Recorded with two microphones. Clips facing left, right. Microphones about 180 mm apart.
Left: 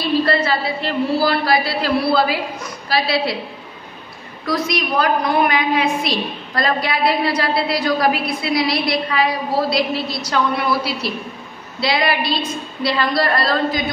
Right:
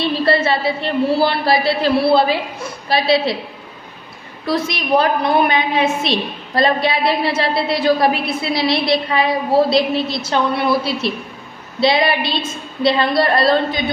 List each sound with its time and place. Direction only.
0.0 s a woman's voice: 25° right (ahead or behind)
4.5 s a woman's voice: 25° right (ahead or behind)